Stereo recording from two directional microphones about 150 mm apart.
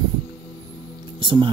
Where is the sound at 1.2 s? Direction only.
30° right (ahead or behind).